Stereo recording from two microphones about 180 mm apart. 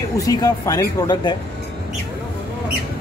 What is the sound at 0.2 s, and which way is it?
Speech, 20° left (ahead or behind).